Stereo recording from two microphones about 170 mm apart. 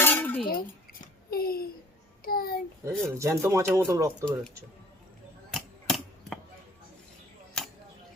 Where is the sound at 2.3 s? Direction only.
60° left (ahead or behind).